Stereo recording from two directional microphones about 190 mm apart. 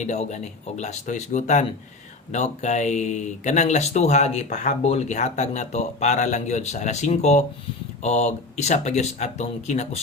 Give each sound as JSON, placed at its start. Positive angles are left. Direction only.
{"t": 0.0, "sound": "speech", "side_deg": 35}